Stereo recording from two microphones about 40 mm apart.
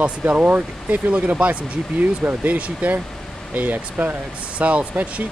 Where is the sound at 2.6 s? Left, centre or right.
Right.